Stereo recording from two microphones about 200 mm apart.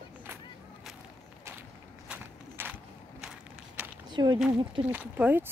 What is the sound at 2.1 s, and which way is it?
Walk, 5° right (ahead or behind).